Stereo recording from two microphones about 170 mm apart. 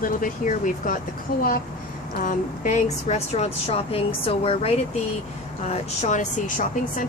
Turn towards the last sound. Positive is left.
turn(degrees=50)  # may be behind; listen again after turning